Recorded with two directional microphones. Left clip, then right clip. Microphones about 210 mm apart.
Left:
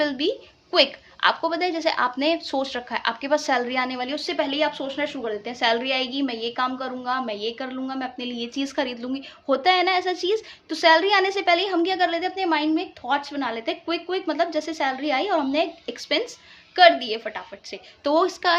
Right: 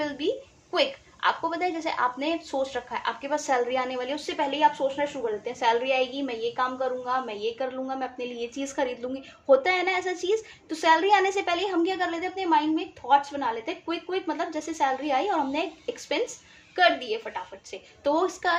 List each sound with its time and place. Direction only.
0.0 s a woman's voice: 40° left (ahead or behind)